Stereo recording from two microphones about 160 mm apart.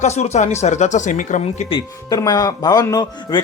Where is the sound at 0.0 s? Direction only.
45° left (ahead or behind).